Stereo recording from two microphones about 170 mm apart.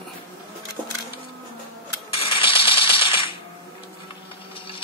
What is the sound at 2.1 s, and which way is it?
Coin, 30° left (ahead or behind).